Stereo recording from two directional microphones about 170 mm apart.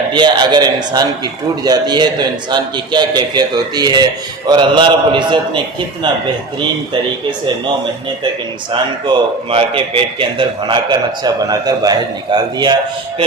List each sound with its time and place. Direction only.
0.1 s a man's voice: 25° right (ahead or behind)
9.0 s a man's voice: 30° right (ahead or behind)